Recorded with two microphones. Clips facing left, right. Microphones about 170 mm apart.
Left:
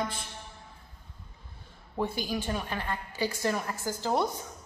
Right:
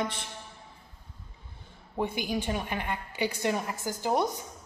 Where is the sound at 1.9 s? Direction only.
15° right (ahead or behind).